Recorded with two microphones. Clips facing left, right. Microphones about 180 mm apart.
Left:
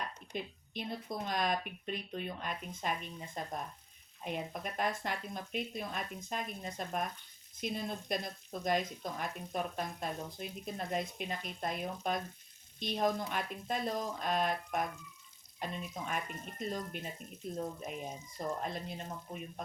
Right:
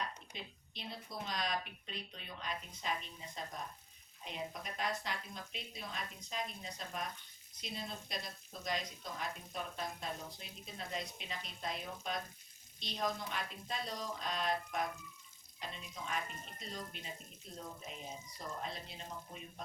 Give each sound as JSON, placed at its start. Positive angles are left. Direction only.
{"t": 0.3, "sound": "speech", "side_deg": 50}